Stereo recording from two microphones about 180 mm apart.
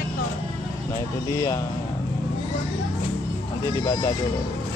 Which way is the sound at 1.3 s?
20° left (ahead or behind).